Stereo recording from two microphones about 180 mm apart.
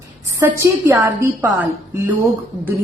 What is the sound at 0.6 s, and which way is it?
Speech, 15° right (ahead or behind).